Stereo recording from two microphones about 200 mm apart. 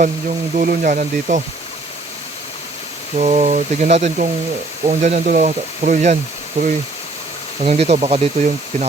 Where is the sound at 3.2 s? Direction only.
35° right (ahead or behind).